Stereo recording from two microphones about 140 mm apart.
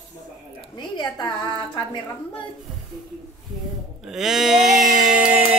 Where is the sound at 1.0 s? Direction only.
30° left (ahead or behind).